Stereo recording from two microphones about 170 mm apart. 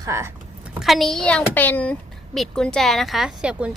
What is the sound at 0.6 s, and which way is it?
A woman's voice, centre (ahead or behind).